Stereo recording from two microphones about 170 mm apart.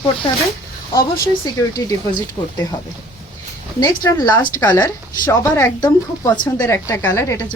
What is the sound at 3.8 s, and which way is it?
A woman's voice, 20° left (ahead or behind).